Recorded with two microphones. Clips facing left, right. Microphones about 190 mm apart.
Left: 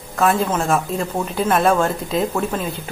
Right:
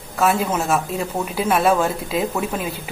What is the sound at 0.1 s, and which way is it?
Speech, 5° right (ahead or behind).